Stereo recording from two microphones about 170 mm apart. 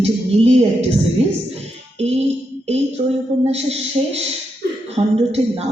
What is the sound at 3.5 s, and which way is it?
A man's voice, 40° right (ahead or behind).